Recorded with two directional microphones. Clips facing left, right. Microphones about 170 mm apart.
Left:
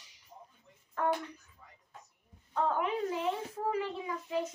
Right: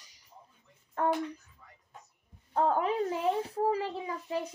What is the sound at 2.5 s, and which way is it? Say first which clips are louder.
Speech: right 3 dB; 35° right (ahead or behind).